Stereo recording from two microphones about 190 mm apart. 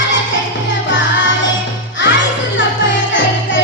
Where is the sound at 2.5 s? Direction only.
80° left.